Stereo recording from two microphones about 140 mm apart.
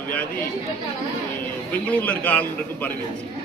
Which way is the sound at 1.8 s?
10° left (ahead or behind).